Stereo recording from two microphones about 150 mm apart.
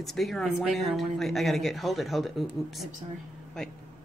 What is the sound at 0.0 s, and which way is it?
Speech, centre (ahead or behind).